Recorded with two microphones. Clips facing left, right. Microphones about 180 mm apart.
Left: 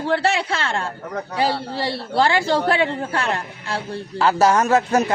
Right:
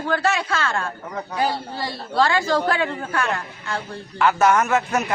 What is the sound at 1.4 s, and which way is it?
Speech, 75° left (ahead or behind).